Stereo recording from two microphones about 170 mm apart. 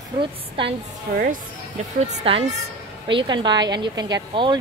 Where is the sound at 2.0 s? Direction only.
35° right (ahead or behind).